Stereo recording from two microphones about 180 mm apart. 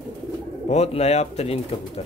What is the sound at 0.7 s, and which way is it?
Speech, 35° left (ahead or behind).